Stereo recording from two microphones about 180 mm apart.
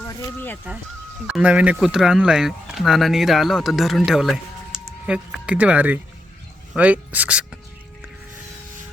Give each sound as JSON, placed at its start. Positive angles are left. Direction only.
{"t": 0.0, "sound": "speech", "side_deg": 15}
{"t": 1.3, "sound": "speech", "side_deg": -5}